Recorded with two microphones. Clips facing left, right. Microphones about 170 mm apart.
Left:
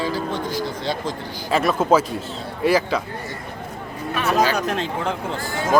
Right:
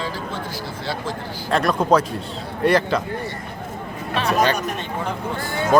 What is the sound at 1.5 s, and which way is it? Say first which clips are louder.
A man's voice: even; 5° left (ahead or behind).